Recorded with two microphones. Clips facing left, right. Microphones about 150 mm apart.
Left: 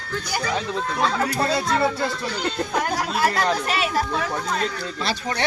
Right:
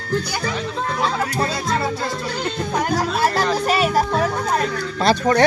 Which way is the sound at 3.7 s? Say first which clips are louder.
Right 5 dB; 40° right (ahead or behind).